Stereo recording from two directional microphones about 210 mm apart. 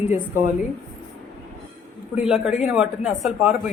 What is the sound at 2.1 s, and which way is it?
Speech, 5° right (ahead or behind).